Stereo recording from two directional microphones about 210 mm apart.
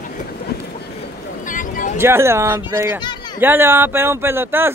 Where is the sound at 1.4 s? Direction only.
40° left (ahead or behind).